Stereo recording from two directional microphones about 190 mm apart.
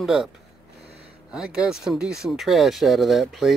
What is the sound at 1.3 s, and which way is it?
Speech, 5° right (ahead or behind).